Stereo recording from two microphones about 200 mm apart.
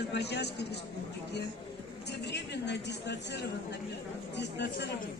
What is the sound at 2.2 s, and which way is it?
A man's voice, 60° left (ahead or behind).